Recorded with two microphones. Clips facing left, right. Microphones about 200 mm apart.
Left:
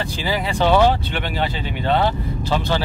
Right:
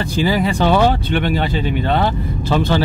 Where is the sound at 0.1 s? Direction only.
45° right (ahead or behind).